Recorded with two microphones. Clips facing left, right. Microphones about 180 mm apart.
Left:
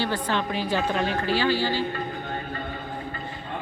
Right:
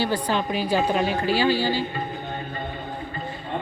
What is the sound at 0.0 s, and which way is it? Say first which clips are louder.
A woman's voice: right 2 dB; 10° right (ahead or behind).